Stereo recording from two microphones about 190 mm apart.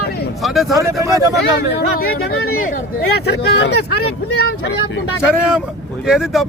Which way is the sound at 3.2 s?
60° left (ahead or behind).